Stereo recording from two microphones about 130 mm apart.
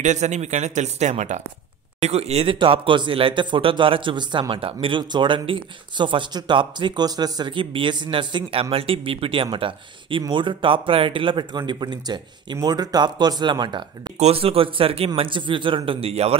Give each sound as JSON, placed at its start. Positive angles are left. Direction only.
{"t": 0.0, "sound": "speech", "side_deg": -65}
{"t": 14.1, "sound": "a man's voice", "side_deg": -50}